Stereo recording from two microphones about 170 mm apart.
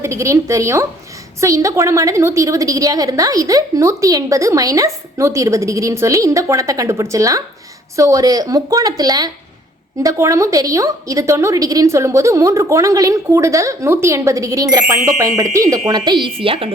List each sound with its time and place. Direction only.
0.0 s a woman's voice: 15° right (ahead or behind); by 16.7 s 30° right (ahead or behind)